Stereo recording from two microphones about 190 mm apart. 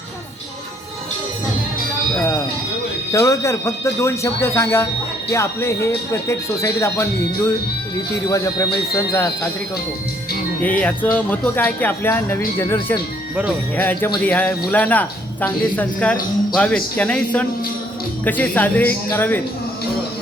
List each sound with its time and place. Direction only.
2.1 s music: 15° left (ahead or behind)
3.1 s speech: 15° left (ahead or behind)
10.6 s speech: 10° left (ahead or behind)